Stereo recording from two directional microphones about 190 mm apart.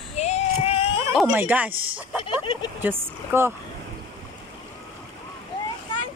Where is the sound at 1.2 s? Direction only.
10° right (ahead or behind).